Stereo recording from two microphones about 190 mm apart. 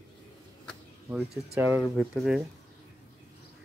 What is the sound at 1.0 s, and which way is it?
Speech, 10° right (ahead or behind).